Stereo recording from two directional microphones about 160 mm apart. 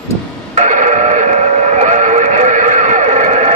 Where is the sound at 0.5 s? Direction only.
50° right (ahead or behind).